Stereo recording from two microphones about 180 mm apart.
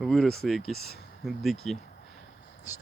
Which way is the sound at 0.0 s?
Centre (ahead or behind).